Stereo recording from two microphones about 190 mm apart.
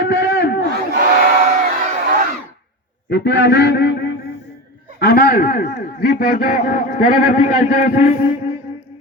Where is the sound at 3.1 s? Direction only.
65° left (ahead or behind); by 8.1 s 45° left (ahead or behind).